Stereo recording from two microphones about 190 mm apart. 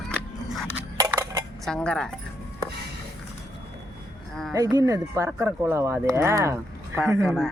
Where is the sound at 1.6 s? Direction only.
5° left (ahead or behind).